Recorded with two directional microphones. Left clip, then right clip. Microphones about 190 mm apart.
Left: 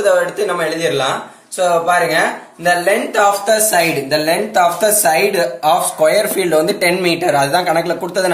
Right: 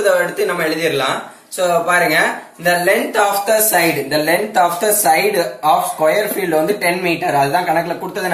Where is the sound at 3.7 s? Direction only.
55° left (ahead or behind).